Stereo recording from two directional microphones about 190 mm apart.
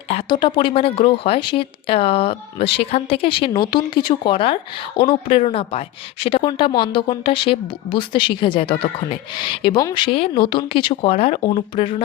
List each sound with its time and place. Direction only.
0.1 s speech: 25° left (ahead or behind)